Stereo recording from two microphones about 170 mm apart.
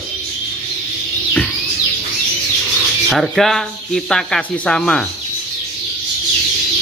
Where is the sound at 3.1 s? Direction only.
Centre (ahead or behind).